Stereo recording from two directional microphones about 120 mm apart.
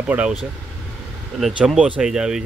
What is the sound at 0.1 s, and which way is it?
Speech, 10° right (ahead or behind).